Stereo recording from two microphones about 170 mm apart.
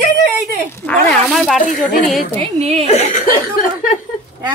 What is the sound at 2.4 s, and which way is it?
Speech, 40° right (ahead or behind).